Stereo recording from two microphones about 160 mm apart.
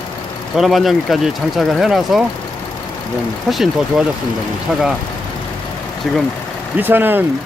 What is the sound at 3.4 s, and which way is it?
Speech, centre (ahead or behind).